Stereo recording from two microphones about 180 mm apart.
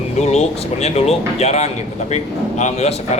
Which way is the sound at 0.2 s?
35° left (ahead or behind).